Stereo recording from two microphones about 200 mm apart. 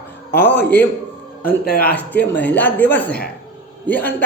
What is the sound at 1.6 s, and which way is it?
Speech, 50° left (ahead or behind).